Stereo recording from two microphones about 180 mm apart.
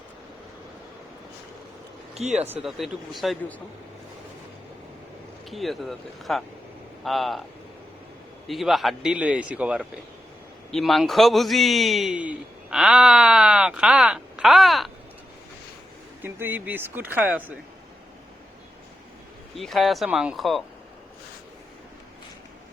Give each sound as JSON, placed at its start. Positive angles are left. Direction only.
{"t": 2.1, "sound": "speech", "side_deg": -35}
{"t": 2.6, "sound": "a man's voice", "side_deg": 0}
{"t": 5.5, "sound": "a man's voice", "side_deg": 0}
{"t": 8.4, "sound": "a man's voice", "side_deg": 0}
{"t": 16.2, "sound": "speech", "side_deg": -10}
{"t": 19.5, "sound": "a man's voice", "side_deg": 0}